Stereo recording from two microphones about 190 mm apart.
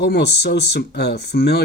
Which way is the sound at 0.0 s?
60° left (ahead or behind).